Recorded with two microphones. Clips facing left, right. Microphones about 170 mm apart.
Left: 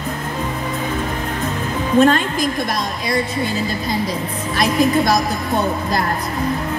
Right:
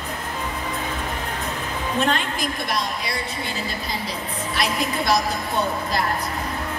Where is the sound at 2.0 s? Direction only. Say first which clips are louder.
Left 10 dB; 45° left (ahead or behind).